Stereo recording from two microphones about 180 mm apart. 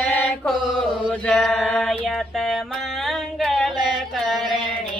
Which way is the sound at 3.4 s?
Centre (ahead or behind).